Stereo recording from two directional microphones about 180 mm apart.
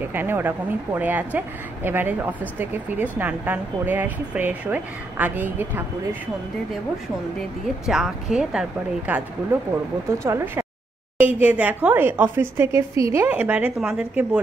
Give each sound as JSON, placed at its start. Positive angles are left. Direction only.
{"t": 0.0, "sound": "speech", "side_deg": -10}
{"t": 7.3, "sound": "speech", "side_deg": 0}
{"t": 10.2, "sound": "speech", "side_deg": -15}